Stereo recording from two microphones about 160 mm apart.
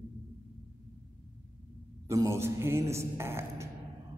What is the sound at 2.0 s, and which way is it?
A man's voice, 20° right (ahead or behind).